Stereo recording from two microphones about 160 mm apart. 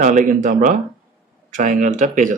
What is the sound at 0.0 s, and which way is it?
Speech, 50° right (ahead or behind).